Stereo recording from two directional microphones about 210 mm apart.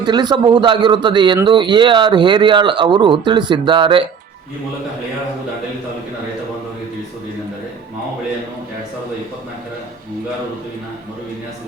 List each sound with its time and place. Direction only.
0.0 s a man's voice: 20° right (ahead or behind)